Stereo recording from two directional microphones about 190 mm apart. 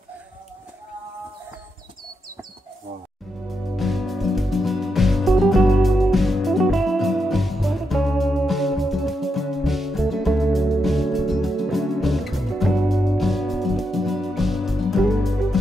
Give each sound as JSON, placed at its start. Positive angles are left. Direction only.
{"t": 3.7, "sound": "music", "side_deg": 0}